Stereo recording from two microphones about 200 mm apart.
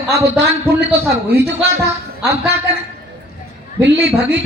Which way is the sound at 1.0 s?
55° right (ahead or behind).